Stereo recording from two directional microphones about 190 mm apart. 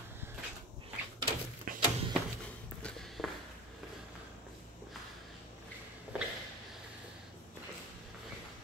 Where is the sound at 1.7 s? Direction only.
45° right (ahead or behind).